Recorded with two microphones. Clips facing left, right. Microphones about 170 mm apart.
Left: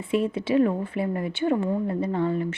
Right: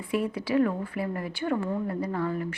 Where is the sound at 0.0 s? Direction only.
25° left (ahead or behind).